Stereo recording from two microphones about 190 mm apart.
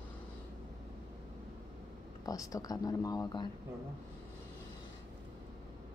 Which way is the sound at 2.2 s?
20° left (ahead or behind).